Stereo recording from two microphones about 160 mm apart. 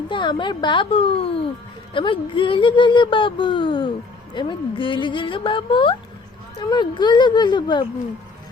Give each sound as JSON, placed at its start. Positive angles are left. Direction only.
{"t": 0.1, "sound": "speech", "side_deg": 30}